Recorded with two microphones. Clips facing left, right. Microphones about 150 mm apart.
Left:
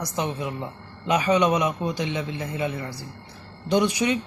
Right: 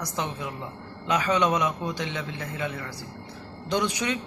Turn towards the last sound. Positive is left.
turn(degrees=15)  # may be behind; listen again after turning